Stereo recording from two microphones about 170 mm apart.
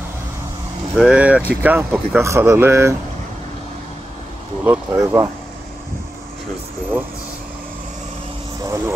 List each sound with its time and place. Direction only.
0.9 s speech: 5° right (ahead or behind)
4.6 s speech: 15° right (ahead or behind)
8.6 s speech: 15° right (ahead or behind)